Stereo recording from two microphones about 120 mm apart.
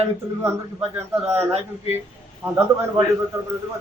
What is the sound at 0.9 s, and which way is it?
Speech, 20° right (ahead or behind).